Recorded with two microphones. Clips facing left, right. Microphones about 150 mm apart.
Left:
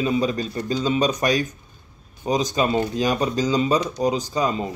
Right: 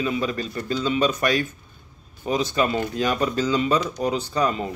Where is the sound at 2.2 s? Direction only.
15° left (ahead or behind).